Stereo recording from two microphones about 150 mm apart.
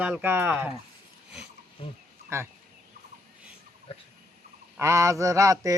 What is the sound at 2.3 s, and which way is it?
Mantra, 15° right (ahead or behind).